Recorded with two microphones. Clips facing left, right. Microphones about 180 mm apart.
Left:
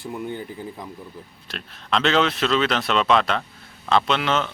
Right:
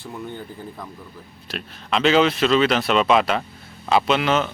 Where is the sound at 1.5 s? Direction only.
5° right (ahead or behind).